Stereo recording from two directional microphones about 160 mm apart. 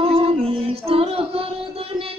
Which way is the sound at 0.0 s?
35° right (ahead or behind).